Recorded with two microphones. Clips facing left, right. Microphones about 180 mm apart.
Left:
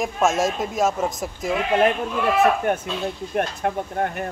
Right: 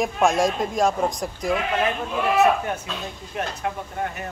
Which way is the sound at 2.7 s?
55° left (ahead or behind).